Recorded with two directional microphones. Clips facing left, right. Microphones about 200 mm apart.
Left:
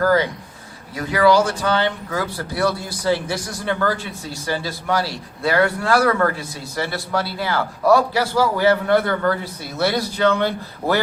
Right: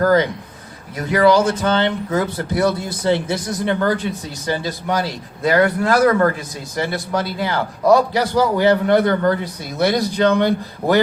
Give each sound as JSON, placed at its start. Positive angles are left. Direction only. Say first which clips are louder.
{"t": 0.0, "sound": "a man's voice", "louder": "right 2 dB", "side_deg": -20}